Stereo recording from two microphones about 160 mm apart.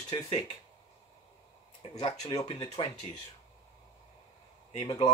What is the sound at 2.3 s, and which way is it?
Speech, 25° left (ahead or behind).